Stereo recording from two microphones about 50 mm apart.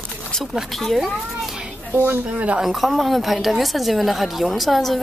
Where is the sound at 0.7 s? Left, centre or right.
Centre.